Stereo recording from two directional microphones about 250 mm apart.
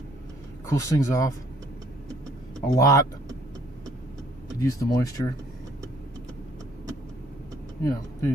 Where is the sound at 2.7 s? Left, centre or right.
Centre.